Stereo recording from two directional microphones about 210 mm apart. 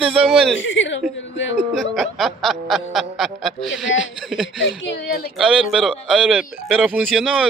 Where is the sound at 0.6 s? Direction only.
60° left (ahead or behind).